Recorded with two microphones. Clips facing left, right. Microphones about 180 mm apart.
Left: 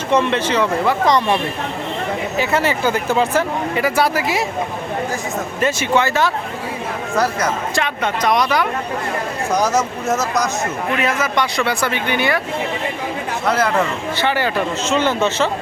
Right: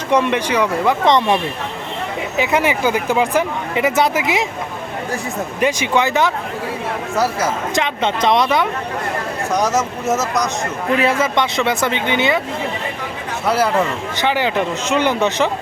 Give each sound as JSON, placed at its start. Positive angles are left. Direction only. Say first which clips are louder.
{"t": 0.1, "sound": "speech", "louder": "even", "side_deg": -15}
{"t": 2.4, "sound": "speech", "louder": "right 2 dB", "side_deg": -15}
{"t": 5.5, "sound": "speech", "louder": "even", "side_deg": -15}
{"t": 7.2, "sound": "speech", "louder": "even", "side_deg": -5}
{"t": 7.8, "sound": "speech", "louder": "right 4 dB", "side_deg": -25}
{"t": 9.5, "sound": "speech", "louder": "even", "side_deg": 0}
{"t": 10.9, "sound": "speech", "louder": "right 4 dB", "side_deg": -30}
{"t": 13.4, "sound": "speech", "louder": "right 1 dB", "side_deg": -10}